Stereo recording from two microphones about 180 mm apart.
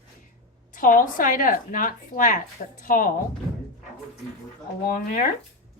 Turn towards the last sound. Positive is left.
turn(degrees=50)  # may be behind; listen again after turning